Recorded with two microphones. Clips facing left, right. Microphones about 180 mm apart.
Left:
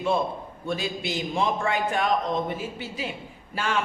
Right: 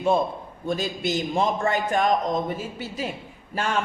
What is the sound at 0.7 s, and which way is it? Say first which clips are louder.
A man's voice: right 3 dB; 45° right (ahead or behind).